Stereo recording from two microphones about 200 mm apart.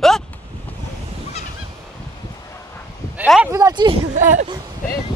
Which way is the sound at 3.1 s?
5° right (ahead or behind).